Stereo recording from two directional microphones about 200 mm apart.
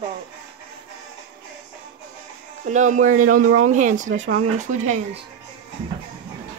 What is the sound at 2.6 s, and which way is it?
Speech, 40° right (ahead or behind).